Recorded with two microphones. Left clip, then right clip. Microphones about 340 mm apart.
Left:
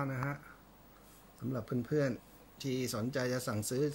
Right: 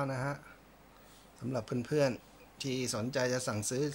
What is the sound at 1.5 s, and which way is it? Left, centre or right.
Speech, centre.